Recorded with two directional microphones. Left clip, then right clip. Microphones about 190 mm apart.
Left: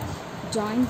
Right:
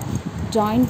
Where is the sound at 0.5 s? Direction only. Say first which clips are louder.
Right 8 dB; 25° right (ahead or behind).